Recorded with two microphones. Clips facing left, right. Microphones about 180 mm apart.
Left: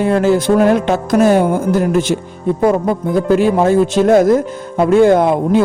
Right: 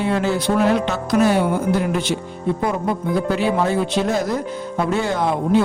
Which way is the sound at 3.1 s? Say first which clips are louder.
Left 8 dB; 45° left (ahead or behind).